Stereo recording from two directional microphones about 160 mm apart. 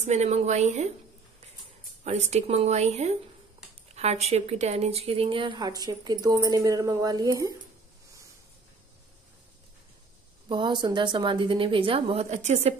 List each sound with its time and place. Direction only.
0.0 s speech: 45° right (ahead or behind)
2.0 s a woman's voice: 45° right (ahead or behind); by 7.5 s 20° right (ahead or behind)
10.5 s a woman's voice: 30° right (ahead or behind)